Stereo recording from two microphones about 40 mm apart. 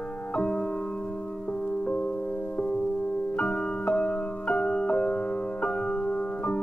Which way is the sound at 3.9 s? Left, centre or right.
Left.